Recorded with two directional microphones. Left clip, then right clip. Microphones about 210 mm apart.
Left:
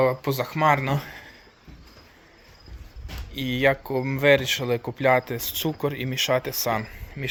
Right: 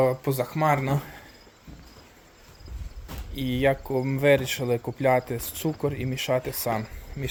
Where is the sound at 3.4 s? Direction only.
10° right (ahead or behind).